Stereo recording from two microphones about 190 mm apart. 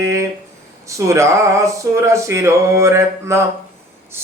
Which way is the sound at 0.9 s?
15° right (ahead or behind).